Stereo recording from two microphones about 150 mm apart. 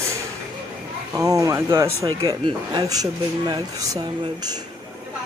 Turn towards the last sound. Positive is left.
turn(degrees=-25)  # may be behind; listen again after turning